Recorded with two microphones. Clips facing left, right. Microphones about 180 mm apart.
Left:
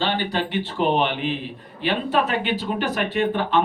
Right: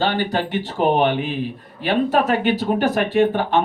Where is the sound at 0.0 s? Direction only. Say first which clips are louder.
Right 3 dB; 45° right (ahead or behind).